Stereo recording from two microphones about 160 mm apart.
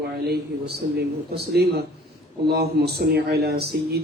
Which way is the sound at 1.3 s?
90° right.